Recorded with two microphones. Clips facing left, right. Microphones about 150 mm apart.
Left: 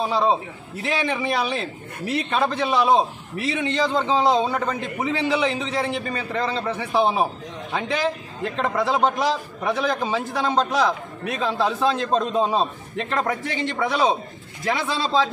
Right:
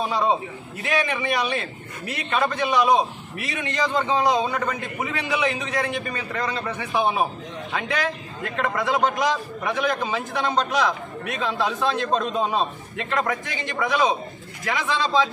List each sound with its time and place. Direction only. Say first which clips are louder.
0.8 s a man's voice: even; 30° left (ahead or behind)